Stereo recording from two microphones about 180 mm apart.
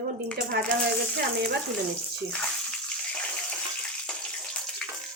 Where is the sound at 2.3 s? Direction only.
5° left (ahead or behind).